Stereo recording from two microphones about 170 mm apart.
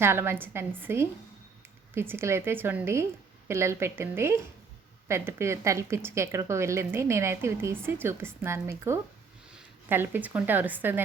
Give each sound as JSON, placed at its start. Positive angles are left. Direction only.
{"t": 0.0, "sound": "speech", "side_deg": -15}